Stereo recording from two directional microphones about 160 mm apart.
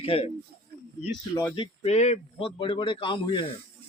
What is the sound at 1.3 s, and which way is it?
A man's voice, 25° left (ahead or behind).